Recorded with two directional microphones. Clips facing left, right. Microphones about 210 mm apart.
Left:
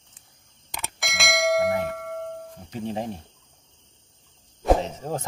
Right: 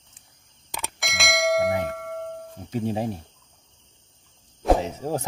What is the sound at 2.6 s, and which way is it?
Speech, 10° right (ahead or behind).